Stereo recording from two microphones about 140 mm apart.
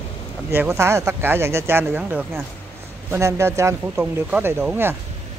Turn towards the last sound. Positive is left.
turn(degrees=-15)  # may be behind; listen again after turning